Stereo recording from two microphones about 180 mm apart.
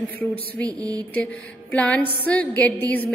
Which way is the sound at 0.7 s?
20° right (ahead or behind).